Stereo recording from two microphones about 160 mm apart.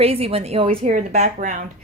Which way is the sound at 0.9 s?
50° right (ahead or behind).